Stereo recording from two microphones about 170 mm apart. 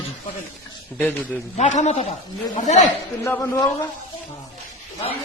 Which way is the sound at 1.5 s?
45° left (ahead or behind).